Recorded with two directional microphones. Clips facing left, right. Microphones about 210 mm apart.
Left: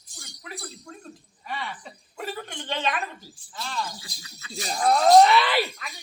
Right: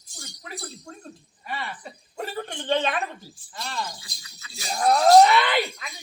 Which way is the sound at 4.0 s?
35° left (ahead or behind).